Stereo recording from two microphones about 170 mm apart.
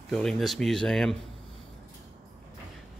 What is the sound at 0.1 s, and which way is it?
A man's voice, 5° left (ahead or behind).